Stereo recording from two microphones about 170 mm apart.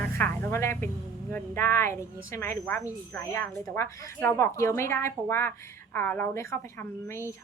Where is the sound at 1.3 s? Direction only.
15° left (ahead or behind).